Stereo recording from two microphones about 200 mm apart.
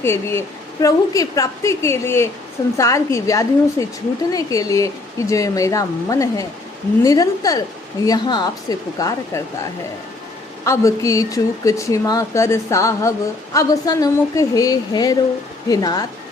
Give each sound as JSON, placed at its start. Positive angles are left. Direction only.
{"t": 0.0, "sound": "a woman's voice", "side_deg": 10}
{"t": 10.7, "sound": "a woman's voice", "side_deg": 15}